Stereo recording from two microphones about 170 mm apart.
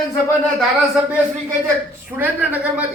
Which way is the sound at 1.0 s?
5° right (ahead or behind).